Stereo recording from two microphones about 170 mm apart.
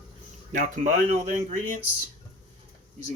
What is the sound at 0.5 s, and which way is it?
Speech, 50° right (ahead or behind).